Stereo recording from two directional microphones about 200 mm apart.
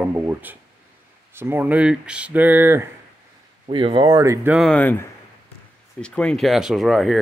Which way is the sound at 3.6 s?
25° right (ahead or behind).